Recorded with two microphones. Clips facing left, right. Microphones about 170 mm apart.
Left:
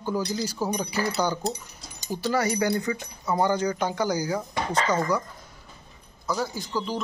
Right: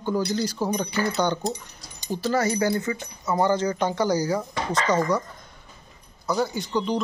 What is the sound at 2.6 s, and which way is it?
Speech, 15° left (ahead or behind).